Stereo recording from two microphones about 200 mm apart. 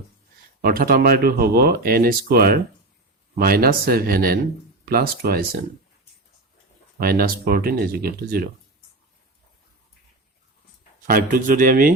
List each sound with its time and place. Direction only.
0.6 s speech: 45° right (ahead or behind)
7.0 s speech: 50° right (ahead or behind)
11.0 s speech: 45° right (ahead or behind)